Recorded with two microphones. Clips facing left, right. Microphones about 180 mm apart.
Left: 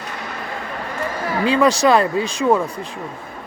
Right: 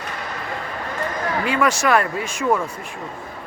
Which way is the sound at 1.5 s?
35° left (ahead or behind).